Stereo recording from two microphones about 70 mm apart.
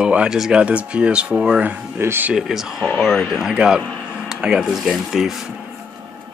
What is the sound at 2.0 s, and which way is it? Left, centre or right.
Speech, right.